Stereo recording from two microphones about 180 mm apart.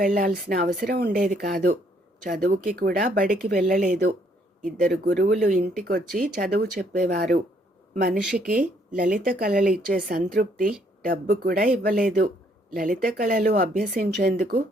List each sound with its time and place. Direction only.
0.0 s speech: 50° right (ahead or behind)
8.2 s speech: 5° right (ahead or behind)
8.6 s speech: 50° right (ahead or behind)